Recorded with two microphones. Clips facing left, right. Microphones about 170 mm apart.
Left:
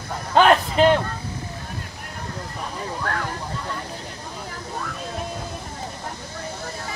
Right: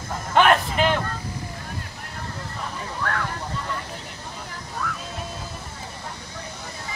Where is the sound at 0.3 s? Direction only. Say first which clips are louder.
Left 2 dB; 35° left (ahead or behind).